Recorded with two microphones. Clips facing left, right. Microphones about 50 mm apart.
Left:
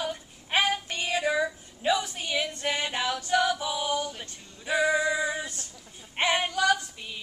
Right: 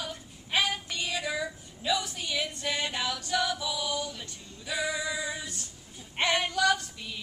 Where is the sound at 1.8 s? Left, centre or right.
Left.